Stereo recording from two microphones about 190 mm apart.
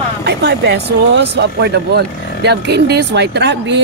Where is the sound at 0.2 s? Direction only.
60° right (ahead or behind).